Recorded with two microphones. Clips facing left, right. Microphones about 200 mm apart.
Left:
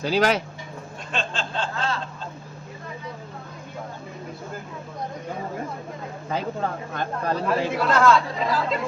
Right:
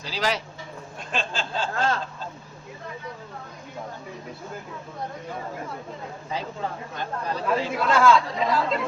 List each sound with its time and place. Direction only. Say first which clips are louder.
0.0 s speech: left 7 dB; 55° left (ahead or behind)
1.1 s speech: even; 5° right (ahead or behind)
6.3 s speech: left 4 dB; 55° left (ahead or behind)
7.8 s speech: even; centre (ahead or behind)